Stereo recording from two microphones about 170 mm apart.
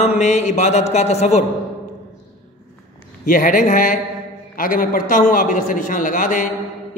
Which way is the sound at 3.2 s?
50° left (ahead or behind).